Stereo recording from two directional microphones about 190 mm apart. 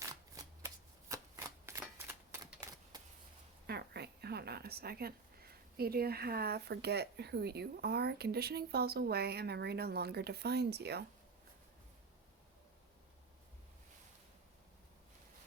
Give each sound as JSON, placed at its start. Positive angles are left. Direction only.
{"t": 0.0, "sound": "shuffling cards", "side_deg": -15}
{"t": 2.0, "sound": "typewriter", "side_deg": -15}
{"t": 3.7, "sound": "speech", "side_deg": -60}